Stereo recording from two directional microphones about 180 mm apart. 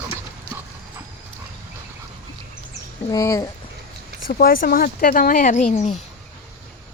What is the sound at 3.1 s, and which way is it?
Speech, 15° left (ahead or behind).